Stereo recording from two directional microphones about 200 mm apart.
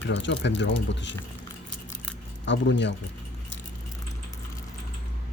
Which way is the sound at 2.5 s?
65° left (ahead or behind).